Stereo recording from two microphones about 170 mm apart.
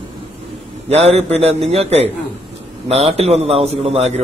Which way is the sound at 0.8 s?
40° right (ahead or behind).